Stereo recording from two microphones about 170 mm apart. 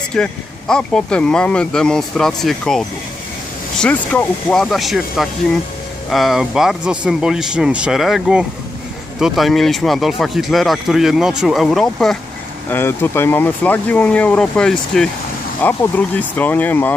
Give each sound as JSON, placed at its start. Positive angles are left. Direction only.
{"t": 0.1, "sound": "speech", "side_deg": 5}
{"t": 3.8, "sound": "speech", "side_deg": 5}
{"t": 12.6, "sound": "speech", "side_deg": 10}